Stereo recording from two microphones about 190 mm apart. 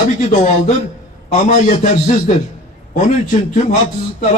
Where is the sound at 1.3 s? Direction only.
40° left (ahead or behind).